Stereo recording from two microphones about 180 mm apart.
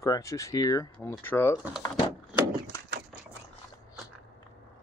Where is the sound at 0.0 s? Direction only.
20° left (ahead or behind).